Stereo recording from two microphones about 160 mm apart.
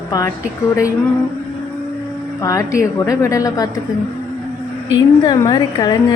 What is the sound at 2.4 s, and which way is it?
A woman's voice, 20° left (ahead or behind).